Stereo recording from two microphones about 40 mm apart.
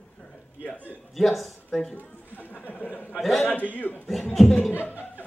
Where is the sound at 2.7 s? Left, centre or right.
Left.